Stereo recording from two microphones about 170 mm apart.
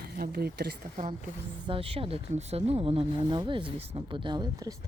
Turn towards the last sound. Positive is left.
turn(degrees=-25)  # may be behind; listen again after turning